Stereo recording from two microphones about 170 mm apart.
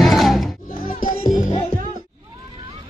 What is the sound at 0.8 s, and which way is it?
Music, 55° left (ahead or behind).